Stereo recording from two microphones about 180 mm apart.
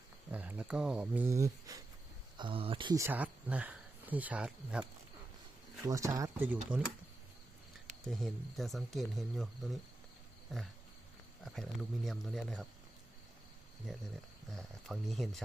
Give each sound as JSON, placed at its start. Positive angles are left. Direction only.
{"t": 0.3, "sound": "speech", "side_deg": -10}
{"t": 2.4, "sound": "speech", "side_deg": -30}
{"t": 3.0, "sound": "speech", "side_deg": -10}
{"t": 5.8, "sound": "speech", "side_deg": -20}
{"t": 8.0, "sound": "speech", "side_deg": 0}
{"t": 14.5, "sound": "speech", "side_deg": 0}